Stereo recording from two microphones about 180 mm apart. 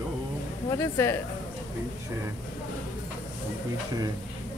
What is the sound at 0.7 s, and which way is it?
Speech, 15° left (ahead or behind).